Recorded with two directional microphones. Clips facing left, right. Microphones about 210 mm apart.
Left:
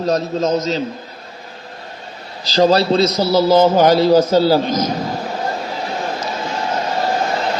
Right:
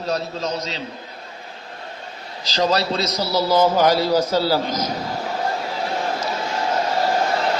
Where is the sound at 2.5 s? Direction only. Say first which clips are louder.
Left 7 dB; 30° left (ahead or behind).